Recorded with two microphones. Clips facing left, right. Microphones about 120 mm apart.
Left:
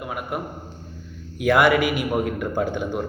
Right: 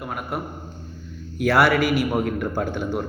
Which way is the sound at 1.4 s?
15° left (ahead or behind).